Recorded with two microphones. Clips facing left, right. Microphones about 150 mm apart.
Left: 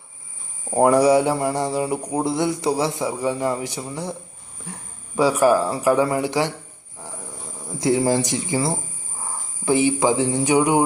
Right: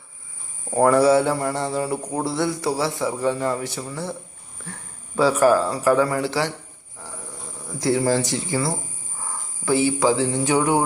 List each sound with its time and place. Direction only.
0.7 s speech: 15° left (ahead or behind)
7.8 s speech: 20° left (ahead or behind)